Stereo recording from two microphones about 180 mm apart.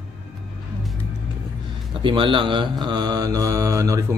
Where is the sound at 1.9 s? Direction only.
25° right (ahead or behind).